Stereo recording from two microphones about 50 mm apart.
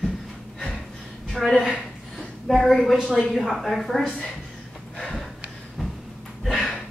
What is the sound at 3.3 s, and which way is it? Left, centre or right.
Speech, centre.